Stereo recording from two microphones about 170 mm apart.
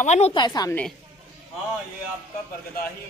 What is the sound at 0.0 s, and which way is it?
Speech, 45° left (ahead or behind).